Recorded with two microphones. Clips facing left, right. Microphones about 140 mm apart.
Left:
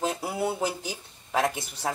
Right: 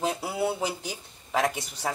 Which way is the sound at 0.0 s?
5° right (ahead or behind).